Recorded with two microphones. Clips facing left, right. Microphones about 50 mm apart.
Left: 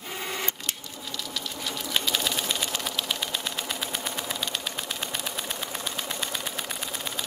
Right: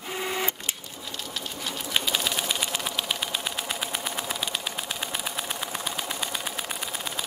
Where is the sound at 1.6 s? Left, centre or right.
Centre.